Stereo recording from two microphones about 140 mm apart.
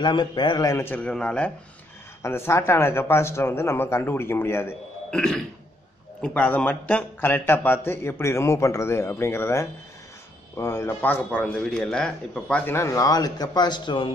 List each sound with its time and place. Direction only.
0.0 s a man's voice: 35° left (ahead or behind); by 4.7 s 15° left (ahead or behind)
5.1 s throat clearing: 5° left (ahead or behind)
6.2 s a man's voice: 10° left (ahead or behind); by 14.1 s 35° left (ahead or behind)